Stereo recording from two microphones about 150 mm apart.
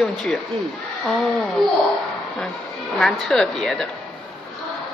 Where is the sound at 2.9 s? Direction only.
5° left (ahead or behind).